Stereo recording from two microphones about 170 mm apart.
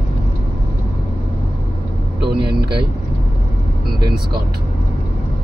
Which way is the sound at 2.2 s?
70° right (ahead or behind).